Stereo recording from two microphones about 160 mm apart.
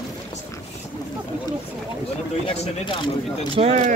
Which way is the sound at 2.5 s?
30° left (ahead or behind).